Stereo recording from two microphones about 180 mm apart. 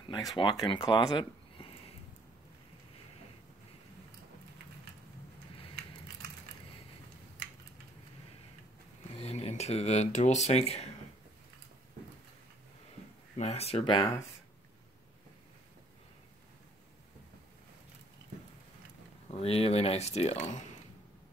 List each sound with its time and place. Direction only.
0.1 s speech: 20° left (ahead or behind)
9.1 s speech: 35° left (ahead or behind)
13.4 s speech: 35° left (ahead or behind)
19.2 s speech: 35° left (ahead or behind)